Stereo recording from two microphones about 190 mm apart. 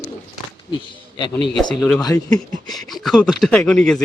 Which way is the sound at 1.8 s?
Centre (ahead or behind).